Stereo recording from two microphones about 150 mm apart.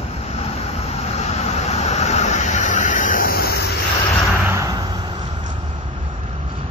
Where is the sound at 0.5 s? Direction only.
45° left (ahead or behind); by 3.6 s 90° left.